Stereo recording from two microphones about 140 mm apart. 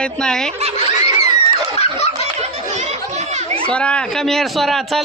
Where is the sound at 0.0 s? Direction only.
5° left (ahead or behind).